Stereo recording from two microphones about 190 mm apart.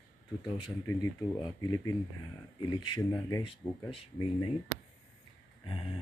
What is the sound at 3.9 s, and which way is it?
Speech, 30° left (ahead or behind).